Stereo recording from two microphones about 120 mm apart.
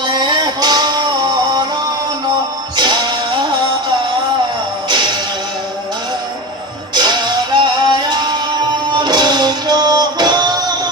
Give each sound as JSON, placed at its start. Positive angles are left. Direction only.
{"t": 0.0, "sound": "music", "side_deg": -40}
{"t": 2.7, "sound": "music", "side_deg": -40}
{"t": 6.9, "sound": "music", "side_deg": -40}